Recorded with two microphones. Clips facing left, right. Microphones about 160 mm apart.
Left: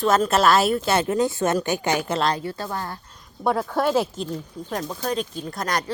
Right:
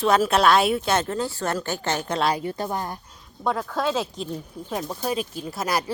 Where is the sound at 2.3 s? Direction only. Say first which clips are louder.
Right 1 dB; 15° right (ahead or behind).